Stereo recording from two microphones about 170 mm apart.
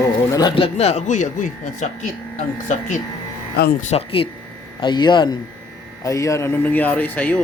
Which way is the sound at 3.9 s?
35° left (ahead or behind).